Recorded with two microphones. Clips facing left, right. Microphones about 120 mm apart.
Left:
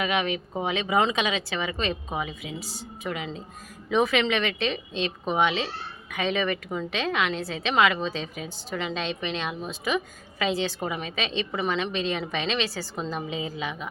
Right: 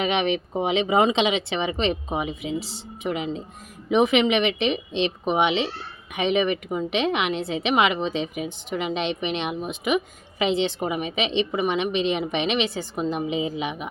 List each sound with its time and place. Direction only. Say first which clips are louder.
0.0 s speech: right 4 dB; 25° right (ahead or behind)